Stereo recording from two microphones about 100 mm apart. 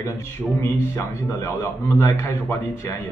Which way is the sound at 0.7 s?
25° left (ahead or behind).